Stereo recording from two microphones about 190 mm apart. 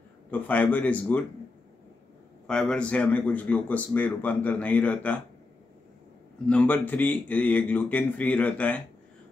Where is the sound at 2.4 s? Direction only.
5° left (ahead or behind).